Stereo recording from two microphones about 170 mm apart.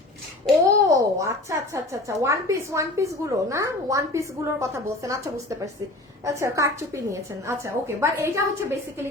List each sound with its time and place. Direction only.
0.6 s a child's voice: 20° right (ahead or behind)
6.2 s a child's voice: 20° right (ahead or behind)